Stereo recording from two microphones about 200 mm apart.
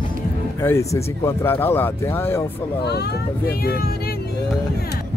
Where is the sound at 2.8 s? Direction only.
55° left (ahead or behind).